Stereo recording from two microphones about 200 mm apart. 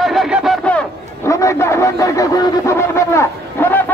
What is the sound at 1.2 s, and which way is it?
A man's voice, 15° left (ahead or behind).